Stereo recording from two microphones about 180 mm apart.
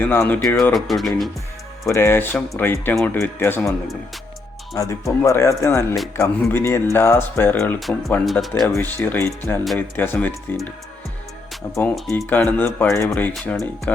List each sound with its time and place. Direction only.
0.0 s speech: 10° left (ahead or behind)
0.4 s speech: centre (ahead or behind)
1.9 s speech: 15° left (ahead or behind)
7.8 s speech: centre (ahead or behind)
8.6 s speech: 10° left (ahead or behind)
12.3 s speech: 10° left (ahead or behind)